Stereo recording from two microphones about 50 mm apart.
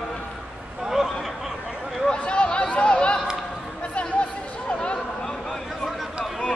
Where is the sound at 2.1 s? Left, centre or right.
Left.